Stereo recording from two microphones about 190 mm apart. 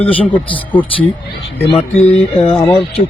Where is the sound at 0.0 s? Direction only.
30° left (ahead or behind).